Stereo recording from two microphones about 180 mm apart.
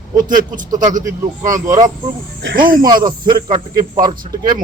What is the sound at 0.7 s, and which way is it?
A man's voice, 20° right (ahead or behind).